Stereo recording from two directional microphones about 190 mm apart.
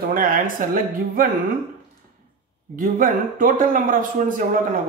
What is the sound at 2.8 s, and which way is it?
Speech, 45° right (ahead or behind).